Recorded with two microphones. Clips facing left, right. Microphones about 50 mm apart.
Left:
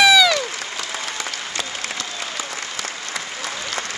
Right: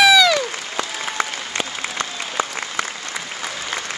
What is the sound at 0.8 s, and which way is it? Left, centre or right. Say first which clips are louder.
Applause: right 7 dB; right.